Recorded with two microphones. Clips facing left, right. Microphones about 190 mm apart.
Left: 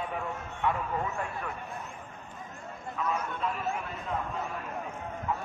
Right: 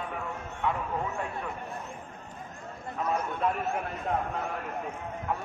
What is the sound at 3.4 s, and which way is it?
Speech, 55° right (ahead or behind).